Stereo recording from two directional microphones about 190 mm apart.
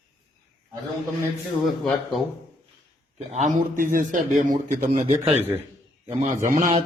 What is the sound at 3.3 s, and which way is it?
A man's voice, 40° right (ahead or behind).